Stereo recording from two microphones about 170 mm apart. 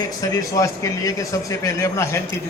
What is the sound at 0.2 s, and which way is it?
A man's voice, 20° left (ahead or behind).